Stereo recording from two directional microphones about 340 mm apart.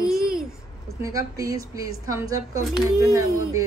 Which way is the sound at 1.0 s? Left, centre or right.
Centre.